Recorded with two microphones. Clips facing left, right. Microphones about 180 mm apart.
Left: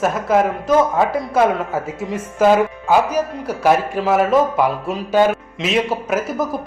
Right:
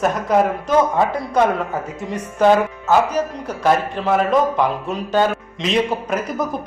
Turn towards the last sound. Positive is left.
turn(degrees=5)  # may be behind; listen again after turning